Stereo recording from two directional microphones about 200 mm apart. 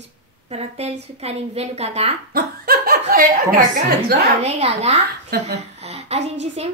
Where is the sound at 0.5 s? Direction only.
30° right (ahead or behind).